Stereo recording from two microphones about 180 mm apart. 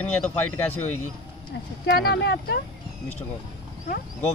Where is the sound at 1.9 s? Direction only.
70° left (ahead or behind).